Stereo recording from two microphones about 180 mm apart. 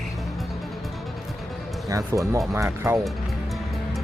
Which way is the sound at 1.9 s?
15° right (ahead or behind).